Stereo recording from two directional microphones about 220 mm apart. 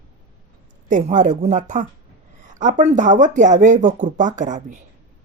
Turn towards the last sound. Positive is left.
turn(degrees=-35)  # may be behind; listen again after turning